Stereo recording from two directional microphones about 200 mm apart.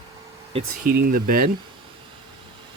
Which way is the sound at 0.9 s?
45° right (ahead or behind).